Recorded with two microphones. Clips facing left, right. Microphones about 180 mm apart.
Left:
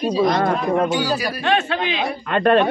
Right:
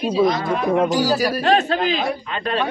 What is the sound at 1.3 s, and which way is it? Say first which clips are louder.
Speech: right 3 dB; 40° right (ahead or behind).